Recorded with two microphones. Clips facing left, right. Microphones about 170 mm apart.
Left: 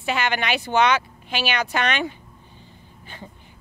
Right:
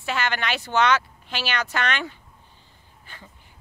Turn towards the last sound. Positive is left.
turn(degrees=20)  # may be behind; listen again after turning